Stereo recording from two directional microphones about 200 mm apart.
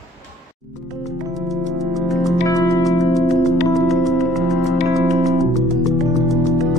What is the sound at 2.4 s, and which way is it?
Music, 15° left (ahead or behind).